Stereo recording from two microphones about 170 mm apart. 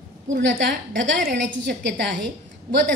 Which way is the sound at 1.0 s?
85° right.